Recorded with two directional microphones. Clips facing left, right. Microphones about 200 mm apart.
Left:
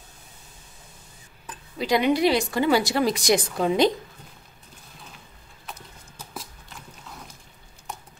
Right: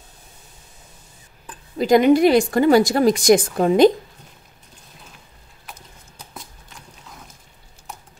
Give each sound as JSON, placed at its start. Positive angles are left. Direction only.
{"t": 1.8, "sound": "a woman's voice", "side_deg": -45}
{"t": 6.3, "sound": "biting", "side_deg": 0}